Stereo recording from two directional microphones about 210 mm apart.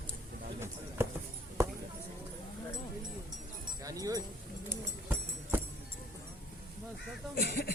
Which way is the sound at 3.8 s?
15° right (ahead or behind).